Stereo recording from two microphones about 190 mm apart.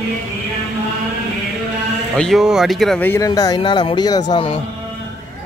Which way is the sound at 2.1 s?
Centre (ahead or behind).